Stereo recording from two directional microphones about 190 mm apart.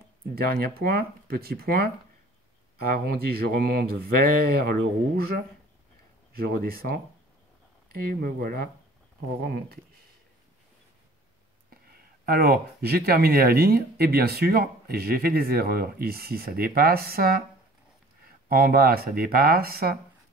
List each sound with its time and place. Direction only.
0.3 s speech: 50° right (ahead or behind)
2.9 s speech: 55° right (ahead or behind)
11.7 s speech: 50° right (ahead or behind)
18.5 s speech: 50° right (ahead or behind)